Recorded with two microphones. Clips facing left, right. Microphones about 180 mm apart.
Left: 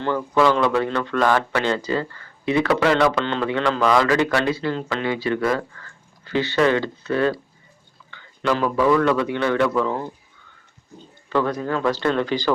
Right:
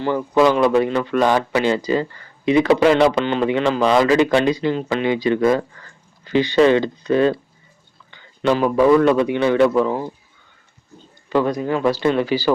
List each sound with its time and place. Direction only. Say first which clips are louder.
0.0 s speech: right 3 dB; 10° right (ahead or behind)
11.3 s speech: right 3 dB; 15° right (ahead or behind)